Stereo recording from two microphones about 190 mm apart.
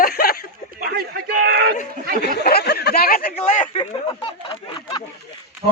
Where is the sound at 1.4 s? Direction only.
55° right (ahead or behind).